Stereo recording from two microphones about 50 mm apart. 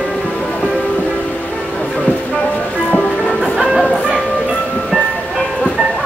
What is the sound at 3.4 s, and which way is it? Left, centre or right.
Music, centre.